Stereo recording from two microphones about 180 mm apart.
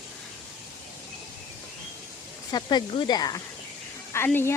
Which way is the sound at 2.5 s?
25° left (ahead or behind).